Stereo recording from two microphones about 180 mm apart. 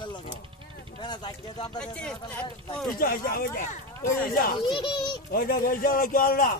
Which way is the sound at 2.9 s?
55° left (ahead or behind).